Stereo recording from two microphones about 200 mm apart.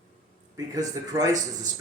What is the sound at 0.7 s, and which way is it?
Speech, 20° right (ahead or behind).